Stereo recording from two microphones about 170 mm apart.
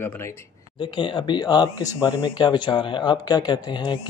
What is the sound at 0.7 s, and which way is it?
Speech, 25° left (ahead or behind).